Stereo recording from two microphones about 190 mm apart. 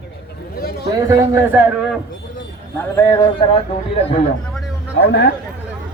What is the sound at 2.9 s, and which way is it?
Speech, 20° left (ahead or behind).